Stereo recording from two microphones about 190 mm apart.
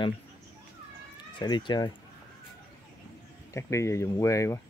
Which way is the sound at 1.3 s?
25° left (ahead or behind).